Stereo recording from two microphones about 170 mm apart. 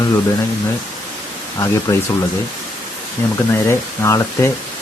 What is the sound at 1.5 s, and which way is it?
Speech, 15° left (ahead or behind).